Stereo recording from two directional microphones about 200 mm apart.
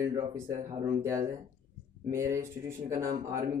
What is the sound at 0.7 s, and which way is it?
Speech, 15° right (ahead or behind).